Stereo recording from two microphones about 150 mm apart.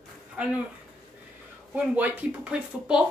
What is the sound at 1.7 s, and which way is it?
A woman's voice, 10° right (ahead or behind).